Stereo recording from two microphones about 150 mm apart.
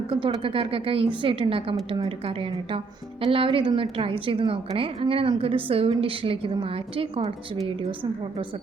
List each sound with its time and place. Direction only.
0.1 s a woman's voice: 35° right (ahead or behind)